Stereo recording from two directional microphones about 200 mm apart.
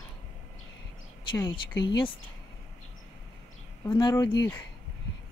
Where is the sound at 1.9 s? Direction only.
20° left (ahead or behind).